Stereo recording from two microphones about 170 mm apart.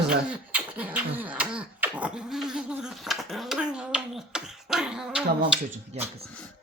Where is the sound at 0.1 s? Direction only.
5° right (ahead or behind).